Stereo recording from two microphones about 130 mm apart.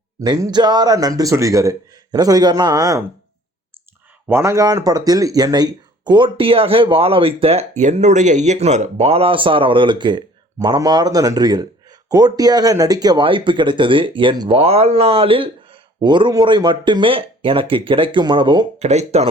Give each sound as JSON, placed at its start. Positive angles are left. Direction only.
{"t": 0.2, "sound": "a man's voice", "side_deg": -30}
{"t": 4.3, "sound": "speech", "side_deg": -20}
{"t": 7.8, "sound": "a man's voice", "side_deg": -65}
{"t": 18.8, "sound": "speech", "side_deg": -60}